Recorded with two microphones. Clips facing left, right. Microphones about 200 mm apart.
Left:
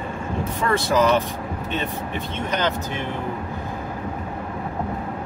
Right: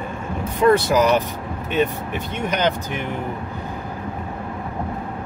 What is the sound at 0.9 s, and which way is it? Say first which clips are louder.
A man's voice: right 1 dB; 15° right (ahead or behind).